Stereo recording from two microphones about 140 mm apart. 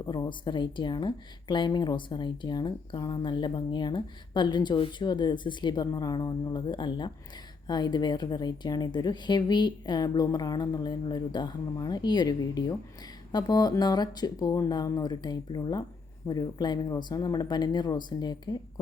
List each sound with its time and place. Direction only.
0.0 s speech: 30° left (ahead or behind)